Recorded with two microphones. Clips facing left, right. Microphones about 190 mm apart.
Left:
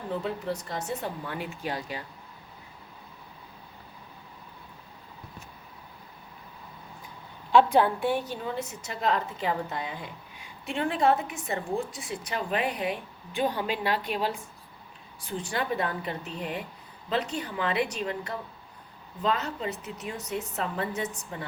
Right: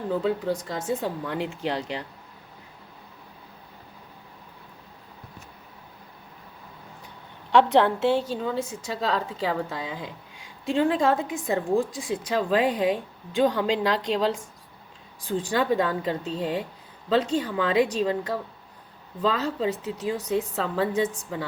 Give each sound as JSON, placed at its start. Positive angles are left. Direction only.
{"t": 0.2, "sound": "a woman's voice", "side_deg": -90}
{"t": 1.6, "sound": "a woman's voice", "side_deg": -75}
{"t": 7.5, "sound": "a woman's voice", "side_deg": -75}
{"t": 8.1, "sound": "a woman's voice", "side_deg": -25}
{"t": 8.9, "sound": "a woman's voice", "side_deg": -90}